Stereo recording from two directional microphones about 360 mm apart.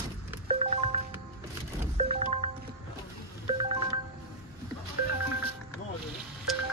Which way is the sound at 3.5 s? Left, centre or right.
Centre.